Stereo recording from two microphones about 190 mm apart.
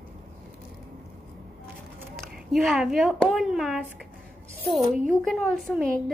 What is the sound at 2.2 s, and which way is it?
A woman's voice, centre (ahead or behind).